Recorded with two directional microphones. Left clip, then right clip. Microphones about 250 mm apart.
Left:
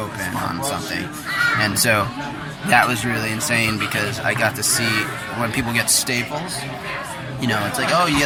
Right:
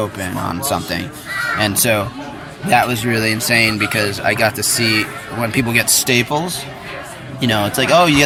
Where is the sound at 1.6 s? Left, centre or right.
Centre.